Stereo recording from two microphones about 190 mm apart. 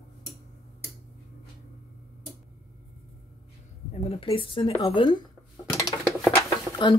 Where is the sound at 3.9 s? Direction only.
30° left (ahead or behind).